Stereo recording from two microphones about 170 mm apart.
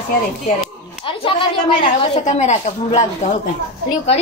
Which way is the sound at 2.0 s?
40° left (ahead or behind).